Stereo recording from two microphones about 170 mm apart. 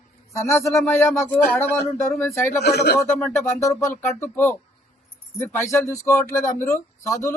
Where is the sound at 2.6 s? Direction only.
75° left (ahead or behind).